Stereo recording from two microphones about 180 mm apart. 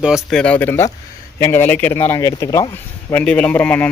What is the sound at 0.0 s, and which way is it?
A man's voice, centre (ahead or behind).